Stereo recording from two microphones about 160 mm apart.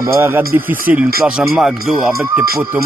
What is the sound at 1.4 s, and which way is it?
Speech, 5° right (ahead or behind).